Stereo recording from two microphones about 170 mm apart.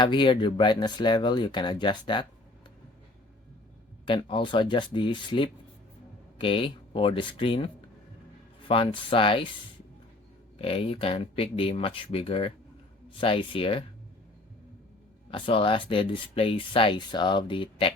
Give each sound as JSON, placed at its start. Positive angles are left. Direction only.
{"t": 0.0, "sound": "speech", "side_deg": 30}
{"t": 4.0, "sound": "speech", "side_deg": 30}
{"t": 10.6, "sound": "speech", "side_deg": 35}
{"t": 15.3, "sound": "speech", "side_deg": 30}